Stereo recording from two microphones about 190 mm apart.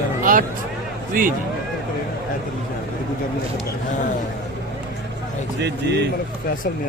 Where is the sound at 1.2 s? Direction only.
45° right (ahead or behind).